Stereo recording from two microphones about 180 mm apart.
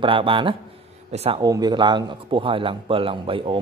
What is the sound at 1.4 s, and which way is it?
Speech, 20° right (ahead or behind).